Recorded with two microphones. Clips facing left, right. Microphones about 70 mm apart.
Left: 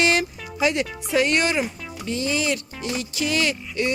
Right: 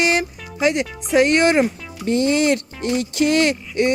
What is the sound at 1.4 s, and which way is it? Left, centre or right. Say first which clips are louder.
Speech: right 7 dB; right.